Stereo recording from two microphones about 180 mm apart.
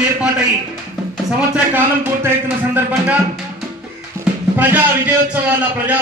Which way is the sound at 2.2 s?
10° right (ahead or behind).